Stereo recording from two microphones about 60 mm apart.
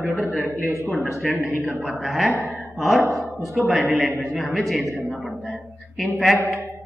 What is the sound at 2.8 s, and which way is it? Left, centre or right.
A man's voice, centre.